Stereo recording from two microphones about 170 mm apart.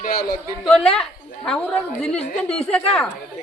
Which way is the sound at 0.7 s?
5° left (ahead or behind).